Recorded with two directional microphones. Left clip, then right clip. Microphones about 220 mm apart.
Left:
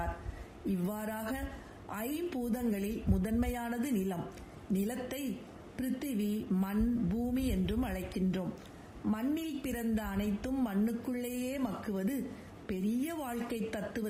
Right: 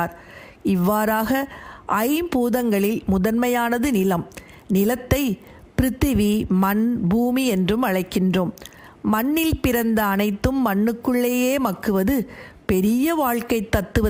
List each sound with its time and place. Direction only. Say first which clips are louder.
0.7 s a woman's voice: right 18 dB; 40° right (ahead or behind)